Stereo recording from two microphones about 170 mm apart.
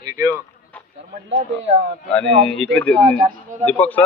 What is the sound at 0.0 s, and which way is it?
Speech, 15° right (ahead or behind).